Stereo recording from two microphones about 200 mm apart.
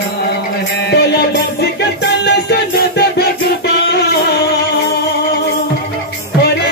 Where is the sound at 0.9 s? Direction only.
55° left (ahead or behind).